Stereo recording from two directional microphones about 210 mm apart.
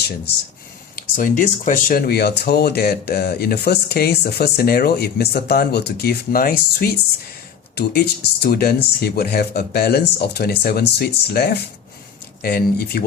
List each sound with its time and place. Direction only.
0.9 s speech: 40° left (ahead or behind)